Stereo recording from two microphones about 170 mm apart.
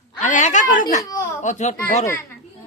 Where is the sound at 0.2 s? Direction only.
45° left (ahead or behind).